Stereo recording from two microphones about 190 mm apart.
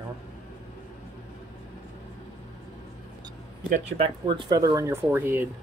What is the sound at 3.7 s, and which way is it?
Speech, 35° right (ahead or behind).